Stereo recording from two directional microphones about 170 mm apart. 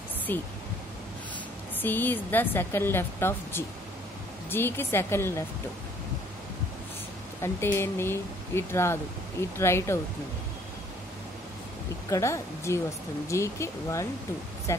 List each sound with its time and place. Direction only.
0.3 s speech: 10° left (ahead or behind)
1.8 s speech: 10° left (ahead or behind)
7.4 s speech: 15° left (ahead or behind)
12.1 s speech: 15° left (ahead or behind)